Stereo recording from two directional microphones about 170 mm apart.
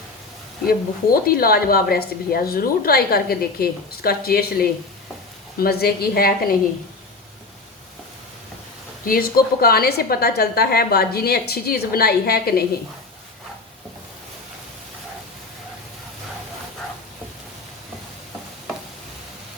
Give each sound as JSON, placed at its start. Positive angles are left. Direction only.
{"t": 0.7, "sound": "speech", "side_deg": 60}
{"t": 9.0, "sound": "speech", "side_deg": 60}